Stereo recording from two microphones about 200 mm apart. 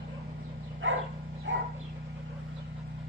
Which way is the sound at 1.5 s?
70° right (ahead or behind).